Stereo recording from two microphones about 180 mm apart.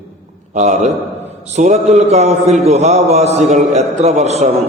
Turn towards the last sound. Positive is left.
turn(degrees=-40)  # may be behind; listen again after turning